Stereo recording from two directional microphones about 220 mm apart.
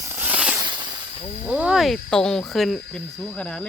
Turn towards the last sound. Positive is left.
turn(degrees=5)  # may be behind; listen again after turning